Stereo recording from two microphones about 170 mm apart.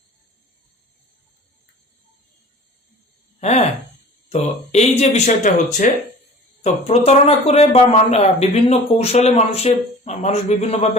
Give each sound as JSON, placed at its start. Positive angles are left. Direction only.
{"t": 4.3, "sound": "speech", "side_deg": 40}
{"t": 6.6, "sound": "speech", "side_deg": 40}